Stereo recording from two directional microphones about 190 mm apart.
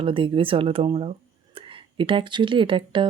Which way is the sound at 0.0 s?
25° right (ahead or behind).